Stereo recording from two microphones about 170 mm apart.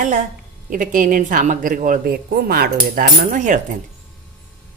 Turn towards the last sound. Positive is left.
turn(degrees=-50)  # may be behind; listen again after turning